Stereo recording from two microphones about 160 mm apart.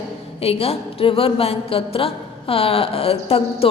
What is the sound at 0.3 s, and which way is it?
A woman's voice, 40° left (ahead or behind).